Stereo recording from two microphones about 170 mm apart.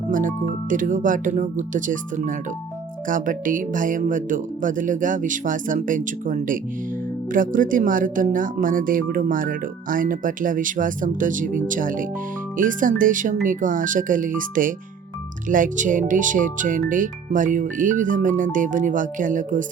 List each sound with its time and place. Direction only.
0.1 s speech: 50° right (ahead or behind)